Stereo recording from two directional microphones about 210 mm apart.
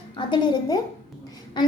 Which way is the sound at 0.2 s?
20° left (ahead or behind).